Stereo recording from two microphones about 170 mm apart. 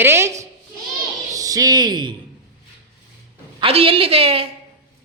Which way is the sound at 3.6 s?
35° right (ahead or behind).